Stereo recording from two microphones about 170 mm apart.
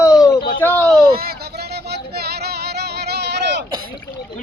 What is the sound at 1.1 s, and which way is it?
Music, 65° right (ahead or behind).